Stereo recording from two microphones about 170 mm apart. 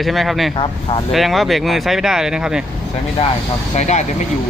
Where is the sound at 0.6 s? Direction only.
30° left (ahead or behind).